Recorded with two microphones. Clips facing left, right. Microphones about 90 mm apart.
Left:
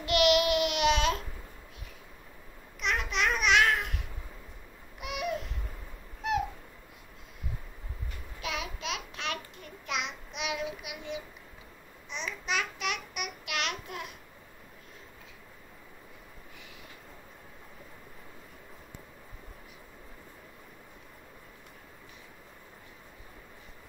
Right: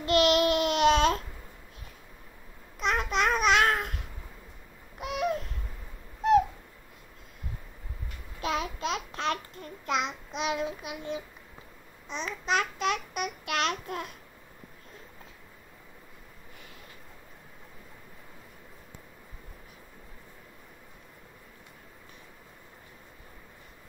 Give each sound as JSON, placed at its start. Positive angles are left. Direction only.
{"t": 0.0, "sound": "babbling", "side_deg": -35}
{"t": 2.8, "sound": "babbling", "side_deg": -40}
{"t": 5.0, "sound": "babbling", "side_deg": -40}
{"t": 8.4, "sound": "babbling", "side_deg": -40}